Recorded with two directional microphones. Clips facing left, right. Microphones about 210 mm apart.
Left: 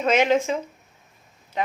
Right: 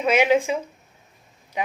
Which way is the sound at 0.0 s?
10° right (ahead or behind).